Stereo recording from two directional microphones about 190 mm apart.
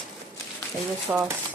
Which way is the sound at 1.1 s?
10° right (ahead or behind).